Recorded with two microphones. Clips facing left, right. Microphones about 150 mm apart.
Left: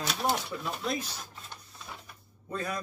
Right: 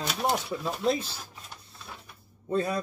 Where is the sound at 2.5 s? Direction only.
30° right (ahead or behind).